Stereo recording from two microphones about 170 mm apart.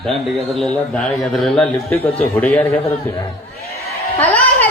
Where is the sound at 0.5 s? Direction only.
5° left (ahead or behind).